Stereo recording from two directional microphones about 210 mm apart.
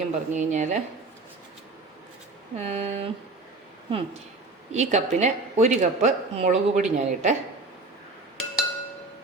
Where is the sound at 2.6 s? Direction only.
30° right (ahead or behind).